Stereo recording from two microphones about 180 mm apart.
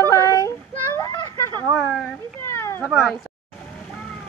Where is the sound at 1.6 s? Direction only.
5° right (ahead or behind).